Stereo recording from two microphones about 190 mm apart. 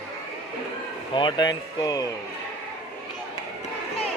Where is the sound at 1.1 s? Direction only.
25° left (ahead or behind).